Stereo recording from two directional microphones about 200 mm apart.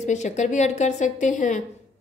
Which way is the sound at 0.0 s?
35° left (ahead or behind).